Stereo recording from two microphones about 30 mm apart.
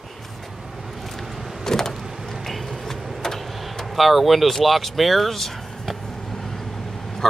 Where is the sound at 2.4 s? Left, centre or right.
Centre.